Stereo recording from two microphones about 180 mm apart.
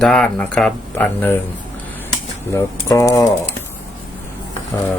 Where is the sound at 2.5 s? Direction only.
15° left (ahead or behind).